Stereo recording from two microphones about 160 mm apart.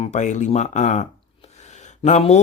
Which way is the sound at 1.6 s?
45° left (ahead or behind).